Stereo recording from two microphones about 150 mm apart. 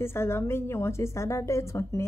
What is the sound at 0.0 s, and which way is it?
A woman's voice, 15° left (ahead or behind).